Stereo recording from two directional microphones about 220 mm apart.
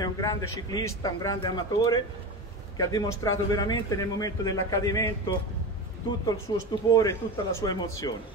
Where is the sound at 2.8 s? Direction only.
15° left (ahead or behind).